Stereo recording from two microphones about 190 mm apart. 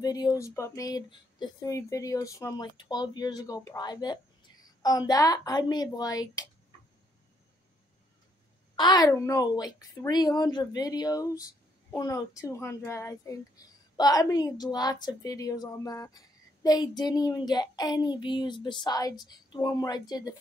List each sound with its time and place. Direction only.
0.0 s speech: 20° left (ahead or behind)
8.7 s speech: 20° left (ahead or behind)